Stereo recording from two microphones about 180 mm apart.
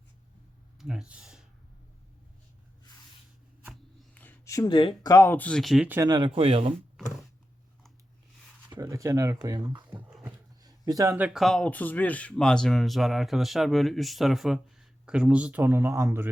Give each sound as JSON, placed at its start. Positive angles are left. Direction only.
{"t": 0.8, "sound": "speech", "side_deg": -5}
{"t": 3.7, "sound": "a sound", "side_deg": 10}
{"t": 4.8, "sound": "speech", "side_deg": 30}
{"t": 5.1, "sound": "speech", "side_deg": 15}
{"t": 6.0, "sound": "speech", "side_deg": -25}
{"t": 7.0, "sound": "a sound", "side_deg": 0}
{"t": 8.7, "sound": "dog", "side_deg": -20}
{"t": 10.6, "sound": "speech", "side_deg": -20}
{"t": 11.4, "sound": "speech", "side_deg": 5}